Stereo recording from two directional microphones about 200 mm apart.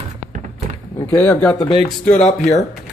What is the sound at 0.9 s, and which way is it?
Speech, 10° left (ahead or behind).